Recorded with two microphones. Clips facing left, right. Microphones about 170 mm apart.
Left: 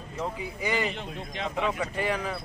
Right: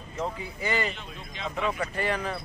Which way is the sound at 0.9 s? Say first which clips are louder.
Left 6 dB; 75° left (ahead or behind).